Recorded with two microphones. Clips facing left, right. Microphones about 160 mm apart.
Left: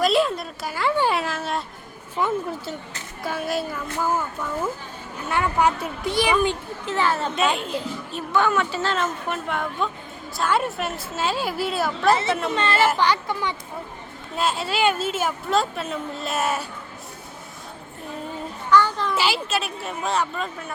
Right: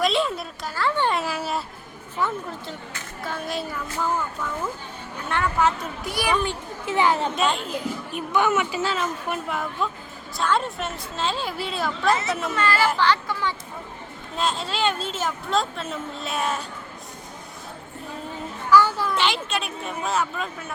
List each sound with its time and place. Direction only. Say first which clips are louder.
0.0 s a woman's voice: left 3 dB; centre (ahead or behind)
0.6 s speech: left 2 dB; 10° left (ahead or behind)
1.2 s a sound: even; 5° right (ahead or behind)
3.2 s a woman's voice: left 4 dB; 5° left (ahead or behind)
5.3 s a woman's voice: left 1 dB; 15° left (ahead or behind)
6.8 s a woman's voice: right 2 dB; 15° right (ahead or behind)
7.3 s a woman's voice: left 1 dB; centre (ahead or behind)
8.1 s a woman's voice: left 1 dB; 15° right (ahead or behind)
12.5 s a child's voice: even; 25° left (ahead or behind)
14.3 s a woman's voice: left 2 dB; 5° left (ahead or behind)
18.7 s a sound: right 1 dB; 10° right (ahead or behind)
19.1 s a woman's voice: left 1 dB; 5° left (ahead or behind)